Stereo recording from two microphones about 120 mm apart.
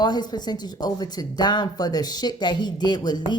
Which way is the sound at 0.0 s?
35° left (ahead or behind).